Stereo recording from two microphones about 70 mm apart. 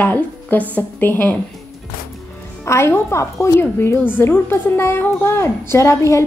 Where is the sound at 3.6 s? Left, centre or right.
Left.